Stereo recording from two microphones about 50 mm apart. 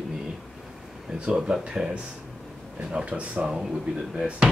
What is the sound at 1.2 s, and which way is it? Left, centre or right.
Speech, centre.